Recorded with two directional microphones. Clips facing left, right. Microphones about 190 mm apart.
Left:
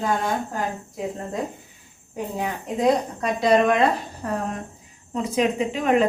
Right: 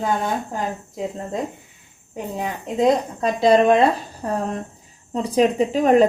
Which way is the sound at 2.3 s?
25° right (ahead or behind).